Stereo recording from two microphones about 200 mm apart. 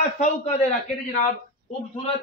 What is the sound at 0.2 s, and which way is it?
Speech, 35° left (ahead or behind).